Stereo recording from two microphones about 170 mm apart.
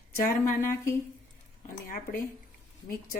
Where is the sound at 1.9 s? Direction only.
55° left (ahead or behind).